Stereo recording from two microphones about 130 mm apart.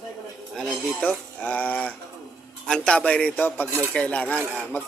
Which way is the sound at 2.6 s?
5° left (ahead or behind).